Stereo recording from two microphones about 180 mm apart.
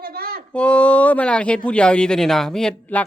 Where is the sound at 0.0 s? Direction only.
60° right (ahead or behind).